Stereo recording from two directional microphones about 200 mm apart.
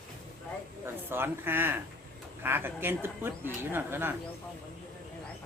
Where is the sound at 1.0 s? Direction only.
10° right (ahead or behind).